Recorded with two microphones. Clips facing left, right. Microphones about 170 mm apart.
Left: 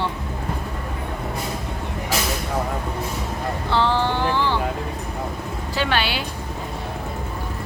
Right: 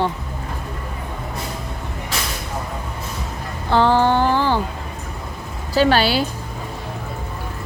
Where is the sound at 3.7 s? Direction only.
45° right (ahead or behind).